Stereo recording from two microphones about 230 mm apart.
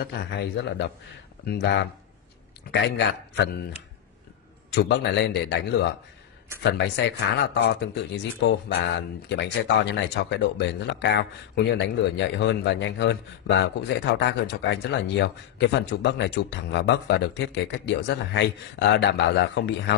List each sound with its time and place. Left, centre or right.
0.0 s speech: left
4.7 s speech: left